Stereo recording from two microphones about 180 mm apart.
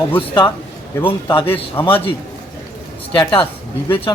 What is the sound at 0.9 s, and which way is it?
Speech, 15° left (ahead or behind).